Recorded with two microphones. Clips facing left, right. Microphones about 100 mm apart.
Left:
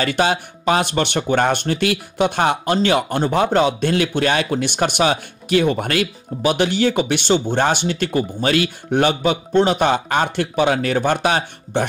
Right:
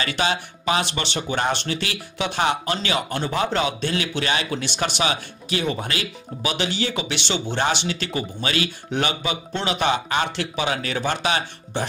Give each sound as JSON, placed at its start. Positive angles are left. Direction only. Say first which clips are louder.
{"t": 0.0, "sound": "speech", "louder": "left 5 dB", "side_deg": 50}